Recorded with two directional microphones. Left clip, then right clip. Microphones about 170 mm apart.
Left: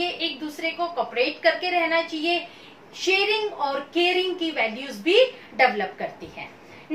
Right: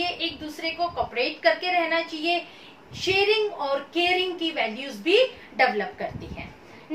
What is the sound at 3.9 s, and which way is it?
A woman's voice, 15° right (ahead or behind).